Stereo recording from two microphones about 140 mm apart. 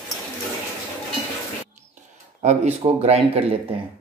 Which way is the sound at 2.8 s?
45° right (ahead or behind).